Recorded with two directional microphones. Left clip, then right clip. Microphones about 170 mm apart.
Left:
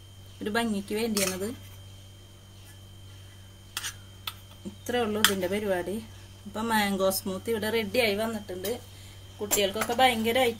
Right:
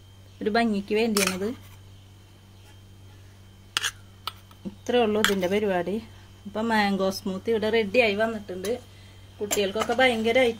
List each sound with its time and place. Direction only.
0.4 s a woman's voice: 40° right (ahead or behind)
1.1 s speech: 55° right (ahead or behind)
3.7 s a sound: 60° right (ahead or behind)
4.8 s a woman's voice: 40° right (ahead or behind)